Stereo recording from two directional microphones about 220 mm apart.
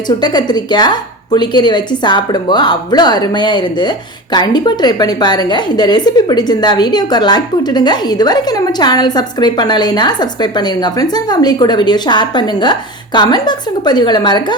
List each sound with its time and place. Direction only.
0.2 s a woman's voice: 20° left (ahead or behind)